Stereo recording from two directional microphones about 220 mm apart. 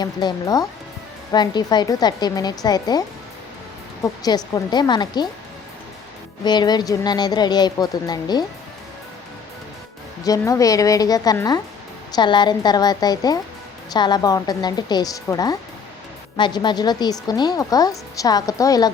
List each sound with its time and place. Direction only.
0.0 s speech: 20° left (ahead or behind)
4.0 s speech: 15° left (ahead or behind)
6.4 s speech: 20° left (ahead or behind)
10.2 s speech: 15° left (ahead or behind)